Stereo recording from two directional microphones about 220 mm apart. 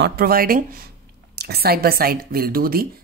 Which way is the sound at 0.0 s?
45° right (ahead or behind).